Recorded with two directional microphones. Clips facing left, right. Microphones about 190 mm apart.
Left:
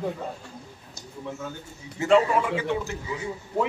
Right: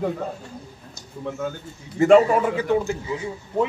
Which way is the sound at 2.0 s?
50° right (ahead or behind).